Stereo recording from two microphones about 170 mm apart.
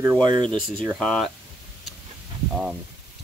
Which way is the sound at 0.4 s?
5° left (ahead or behind).